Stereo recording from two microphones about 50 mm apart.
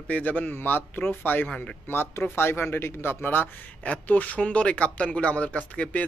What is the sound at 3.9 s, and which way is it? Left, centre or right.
Speech, left.